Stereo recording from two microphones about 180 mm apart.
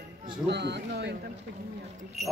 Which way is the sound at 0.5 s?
70° right (ahead or behind).